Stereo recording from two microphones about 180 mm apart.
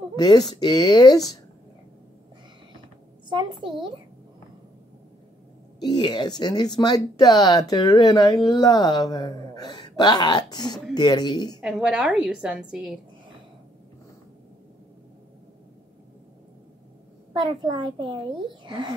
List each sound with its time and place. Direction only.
0.1 s speech: 25° left (ahead or behind)
3.3 s a child's voice: 25° right (ahead or behind)
5.8 s speech: 25° left (ahead or behind)
11.6 s a woman's voice: 5° right (ahead or behind)
17.3 s a child's voice: 25° right (ahead or behind)